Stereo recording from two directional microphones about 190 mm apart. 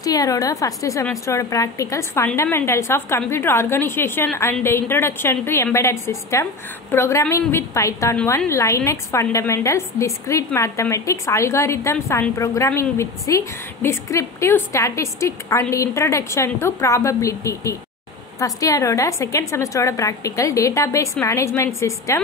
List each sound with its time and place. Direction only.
0.0 s a woman's voice: 20° left (ahead or behind)